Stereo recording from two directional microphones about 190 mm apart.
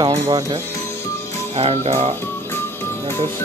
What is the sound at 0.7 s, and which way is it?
Music, 10° left (ahead or behind).